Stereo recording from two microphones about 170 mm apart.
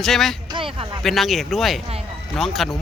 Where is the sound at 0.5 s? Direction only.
30° right (ahead or behind).